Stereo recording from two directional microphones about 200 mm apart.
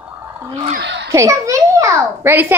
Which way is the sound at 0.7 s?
60° right (ahead or behind).